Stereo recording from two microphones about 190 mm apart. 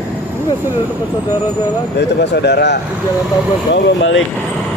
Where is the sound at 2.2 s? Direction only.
65° left (ahead or behind).